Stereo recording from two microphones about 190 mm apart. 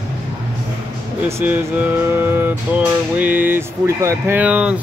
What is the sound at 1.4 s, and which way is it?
Music, 10° right (ahead or behind).